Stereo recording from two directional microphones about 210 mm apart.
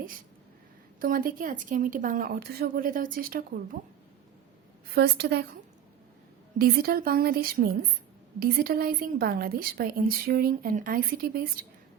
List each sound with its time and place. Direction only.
0.9 s a woman's voice: 40° right (ahead or behind)
4.9 s a woman's voice: 50° right (ahead or behind)
6.6 s a woman's voice: 45° right (ahead or behind)